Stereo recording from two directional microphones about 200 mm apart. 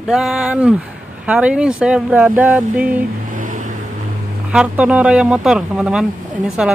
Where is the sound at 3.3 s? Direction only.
40° right (ahead or behind).